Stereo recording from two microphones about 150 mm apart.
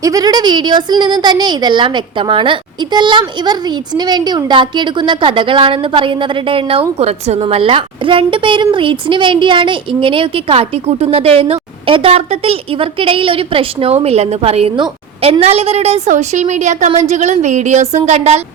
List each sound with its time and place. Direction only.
0.0 s a woman's voice: 25° right (ahead or behind); by 18.4 s 45° right (ahead or behind)